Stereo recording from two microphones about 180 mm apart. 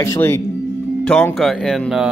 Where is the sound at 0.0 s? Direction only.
15° left (ahead or behind).